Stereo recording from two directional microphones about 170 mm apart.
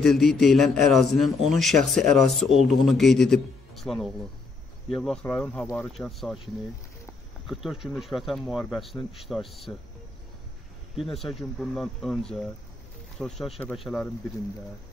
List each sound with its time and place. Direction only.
0.0 s a man's voice: centre (ahead or behind)
7.4 s a man's voice: centre (ahead or behind)
11.0 s a man's voice: centre (ahead or behind)
13.2 s a man's voice: 5° left (ahead or behind)